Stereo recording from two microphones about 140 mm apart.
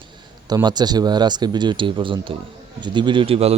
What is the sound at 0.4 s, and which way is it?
Speech, 30° right (ahead or behind).